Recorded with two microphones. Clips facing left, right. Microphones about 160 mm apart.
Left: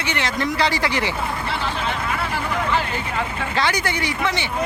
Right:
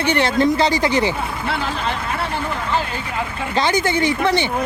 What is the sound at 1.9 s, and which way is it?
Speech, 20° right (ahead or behind).